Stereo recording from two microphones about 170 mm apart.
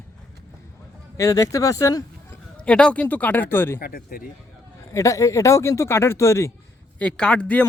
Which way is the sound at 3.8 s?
60° left (ahead or behind).